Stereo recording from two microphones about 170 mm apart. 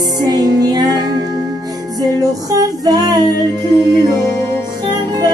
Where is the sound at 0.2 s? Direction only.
25° right (ahead or behind).